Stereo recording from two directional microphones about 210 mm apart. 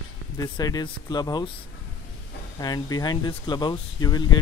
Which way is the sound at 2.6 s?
20° left (ahead or behind).